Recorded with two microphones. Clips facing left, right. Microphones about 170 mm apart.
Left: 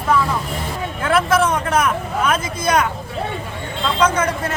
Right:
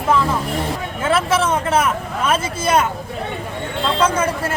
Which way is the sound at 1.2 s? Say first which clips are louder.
Left 4 dB; 5° right (ahead or behind).